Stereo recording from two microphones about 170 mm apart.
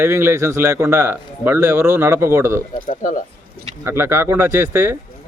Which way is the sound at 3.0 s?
50° left (ahead or behind).